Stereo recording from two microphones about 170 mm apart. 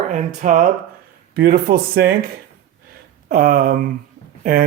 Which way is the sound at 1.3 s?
60° right (ahead or behind).